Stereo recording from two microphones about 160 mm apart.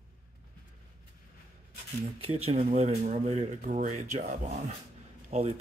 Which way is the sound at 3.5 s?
55° right (ahead or behind).